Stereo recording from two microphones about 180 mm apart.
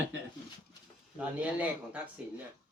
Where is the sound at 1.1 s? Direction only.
5° right (ahead or behind).